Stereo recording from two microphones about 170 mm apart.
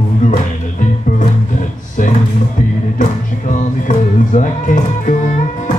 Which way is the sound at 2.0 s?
50° left (ahead or behind).